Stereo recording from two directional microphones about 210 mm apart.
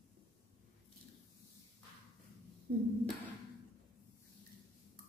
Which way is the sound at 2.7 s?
40° right (ahead or behind).